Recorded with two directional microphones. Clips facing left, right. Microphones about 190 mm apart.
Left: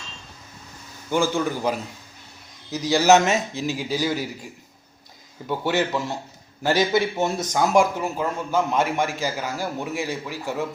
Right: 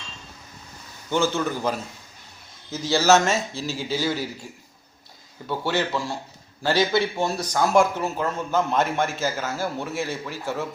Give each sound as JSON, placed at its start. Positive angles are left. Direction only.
{"t": 1.1, "sound": "speech", "side_deg": 10}
{"t": 5.5, "sound": "speech", "side_deg": 15}